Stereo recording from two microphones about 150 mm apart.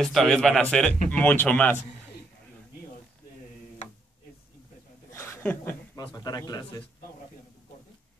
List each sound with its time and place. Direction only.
0.0 s speech: centre (ahead or behind)
5.1 s chuckle: 20° left (ahead or behind)
5.9 s speech: 25° left (ahead or behind)